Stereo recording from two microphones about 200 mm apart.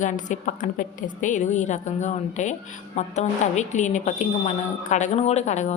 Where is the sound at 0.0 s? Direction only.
40° left (ahead or behind).